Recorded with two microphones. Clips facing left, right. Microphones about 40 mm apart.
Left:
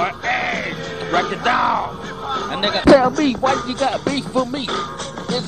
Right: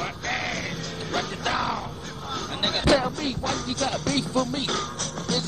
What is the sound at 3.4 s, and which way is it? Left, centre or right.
Speech, left.